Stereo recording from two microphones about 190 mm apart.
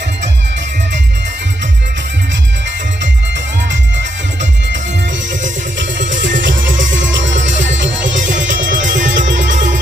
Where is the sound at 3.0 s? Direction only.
70° right (ahead or behind).